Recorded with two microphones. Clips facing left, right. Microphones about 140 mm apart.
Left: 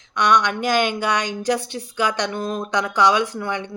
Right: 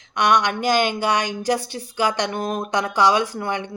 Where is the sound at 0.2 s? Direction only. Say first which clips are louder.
Even; 10° right (ahead or behind).